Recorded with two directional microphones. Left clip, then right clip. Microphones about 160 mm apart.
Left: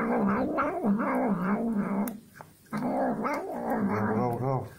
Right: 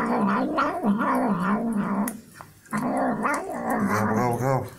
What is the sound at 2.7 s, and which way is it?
Dog, 25° left (ahead or behind).